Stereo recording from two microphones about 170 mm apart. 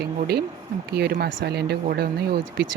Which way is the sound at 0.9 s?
70° right (ahead or behind).